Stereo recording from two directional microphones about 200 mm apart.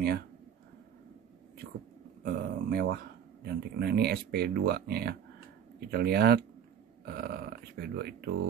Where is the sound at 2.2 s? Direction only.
50° right (ahead or behind).